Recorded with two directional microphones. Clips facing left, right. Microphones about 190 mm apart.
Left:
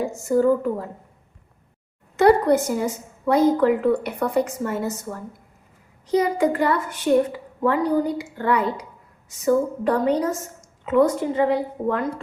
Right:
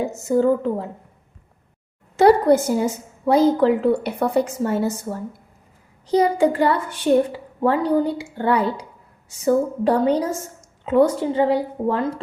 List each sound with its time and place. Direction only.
0.3 s a woman's voice: 25° right (ahead or behind)
2.2 s a woman's voice: 30° right (ahead or behind)